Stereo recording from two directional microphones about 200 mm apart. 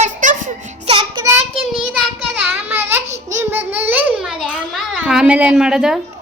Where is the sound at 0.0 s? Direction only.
40° right (ahead or behind).